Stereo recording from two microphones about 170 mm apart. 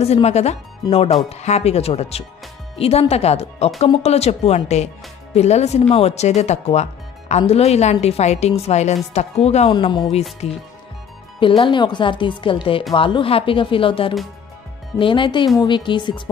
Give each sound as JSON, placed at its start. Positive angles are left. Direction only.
{"t": 0.0, "sound": "speech", "side_deg": 40}
{"t": 9.7, "sound": "speech", "side_deg": 25}
{"t": 10.4, "sound": "speech", "side_deg": 40}